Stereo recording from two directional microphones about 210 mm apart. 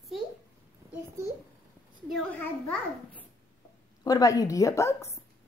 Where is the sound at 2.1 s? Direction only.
5° left (ahead or behind).